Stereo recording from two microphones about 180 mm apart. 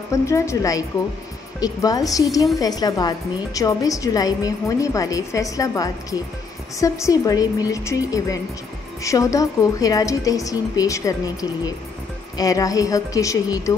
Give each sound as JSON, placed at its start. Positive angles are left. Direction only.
{"t": 0.1, "sound": "a woman's voice", "side_deg": 15}